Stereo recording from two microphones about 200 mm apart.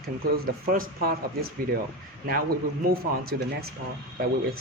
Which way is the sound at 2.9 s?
50° right (ahead or behind).